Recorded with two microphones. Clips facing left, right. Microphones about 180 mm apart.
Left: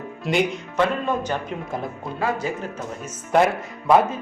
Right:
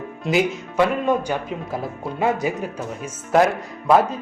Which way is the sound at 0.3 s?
Centre (ahead or behind).